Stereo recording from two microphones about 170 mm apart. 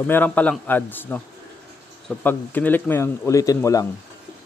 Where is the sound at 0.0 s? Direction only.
10° left (ahead or behind).